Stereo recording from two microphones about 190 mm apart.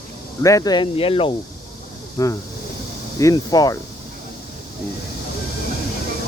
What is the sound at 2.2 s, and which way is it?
Speech, 20° left (ahead or behind).